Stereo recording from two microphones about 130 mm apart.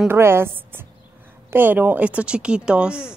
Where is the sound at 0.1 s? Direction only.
20° right (ahead or behind).